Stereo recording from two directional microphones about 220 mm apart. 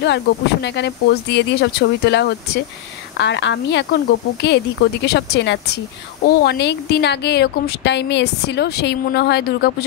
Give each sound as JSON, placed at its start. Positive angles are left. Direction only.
{"t": 0.0, "sound": "a woman's voice", "side_deg": 50}